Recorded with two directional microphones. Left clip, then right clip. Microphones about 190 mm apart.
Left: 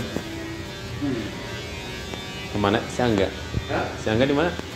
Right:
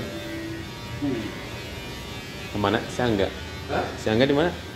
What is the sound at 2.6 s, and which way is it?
Speech, centre (ahead or behind).